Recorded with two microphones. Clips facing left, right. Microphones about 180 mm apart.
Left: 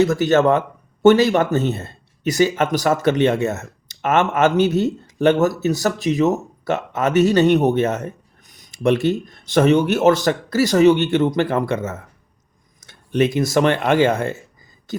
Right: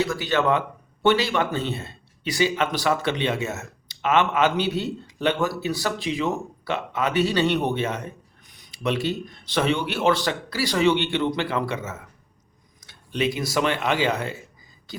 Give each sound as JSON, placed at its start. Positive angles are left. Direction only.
{"t": 0.0, "sound": "speech", "side_deg": 45}